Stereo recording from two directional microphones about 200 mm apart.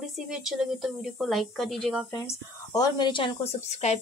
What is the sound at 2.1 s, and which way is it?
Speech, 15° left (ahead or behind).